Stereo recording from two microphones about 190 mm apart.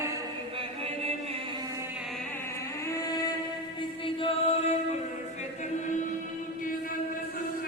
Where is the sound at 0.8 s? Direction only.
30° right (ahead or behind).